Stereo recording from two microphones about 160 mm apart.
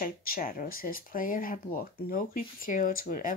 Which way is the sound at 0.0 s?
65° left (ahead or behind).